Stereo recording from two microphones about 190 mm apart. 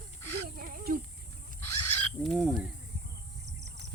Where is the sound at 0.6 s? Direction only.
50° right (ahead or behind).